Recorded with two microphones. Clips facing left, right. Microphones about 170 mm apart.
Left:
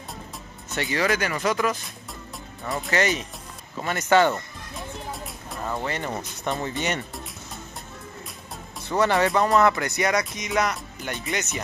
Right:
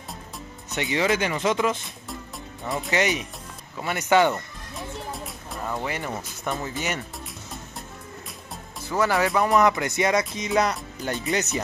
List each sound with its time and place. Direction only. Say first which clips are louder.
0.7 s speech: right 1 dB; 20° right (ahead or behind)
2.9 s speech: even; 15° right (ahead or behind)
4.7 s music: right 1 dB; centre (ahead or behind)
5.9 s speech: left 1 dB; 10° right (ahead or behind)
8.9 s speech: left 1 dB; 5° right (ahead or behind)
9.6 s speech: even; 20° right (ahead or behind)